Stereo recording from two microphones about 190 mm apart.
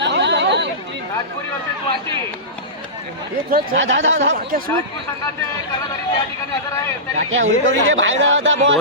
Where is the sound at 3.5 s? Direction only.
65° right (ahead or behind); by 4.4 s 85° right.